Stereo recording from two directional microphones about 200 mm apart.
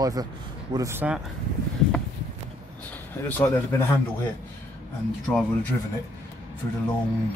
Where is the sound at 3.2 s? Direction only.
15° left (ahead or behind).